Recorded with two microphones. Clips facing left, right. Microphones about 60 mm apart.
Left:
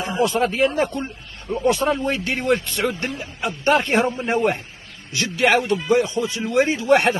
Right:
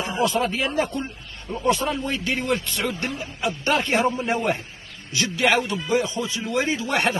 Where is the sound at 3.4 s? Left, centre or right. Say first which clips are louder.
Left 4 dB; left.